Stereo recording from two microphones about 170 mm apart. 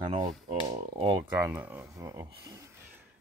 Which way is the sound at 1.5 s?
10° right (ahead or behind).